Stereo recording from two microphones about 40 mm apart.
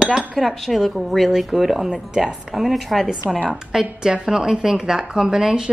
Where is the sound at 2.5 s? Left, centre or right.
Centre.